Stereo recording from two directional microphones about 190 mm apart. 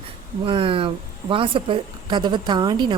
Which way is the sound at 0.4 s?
30° right (ahead or behind).